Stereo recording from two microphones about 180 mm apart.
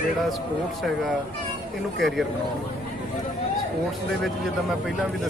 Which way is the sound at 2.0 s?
Centre (ahead or behind).